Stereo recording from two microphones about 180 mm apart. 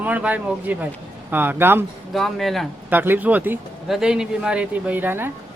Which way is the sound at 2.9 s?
10° right (ahead or behind).